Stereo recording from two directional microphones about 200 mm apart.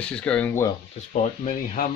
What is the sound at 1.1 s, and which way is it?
Speech, 35° left (ahead or behind).